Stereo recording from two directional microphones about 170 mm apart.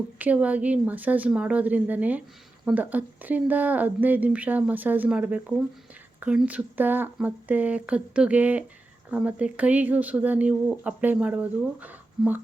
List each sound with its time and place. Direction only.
0.2 s speech: 10° right (ahead or behind)